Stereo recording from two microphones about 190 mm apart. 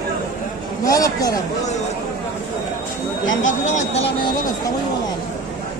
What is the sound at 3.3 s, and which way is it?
Speech, 85° left.